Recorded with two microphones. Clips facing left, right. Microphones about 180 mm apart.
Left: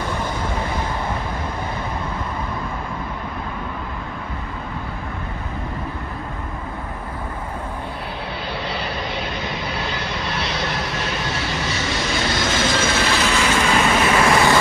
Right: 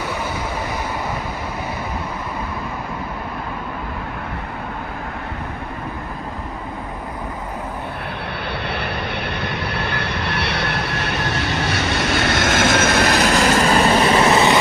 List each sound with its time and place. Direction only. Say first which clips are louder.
8.6 s vehicle: right 1 dB; 60° right (ahead or behind); by 14.6 s 20° right (ahead or behind)